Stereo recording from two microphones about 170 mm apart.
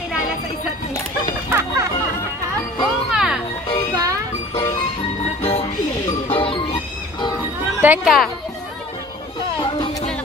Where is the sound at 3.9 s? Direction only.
20° right (ahead or behind).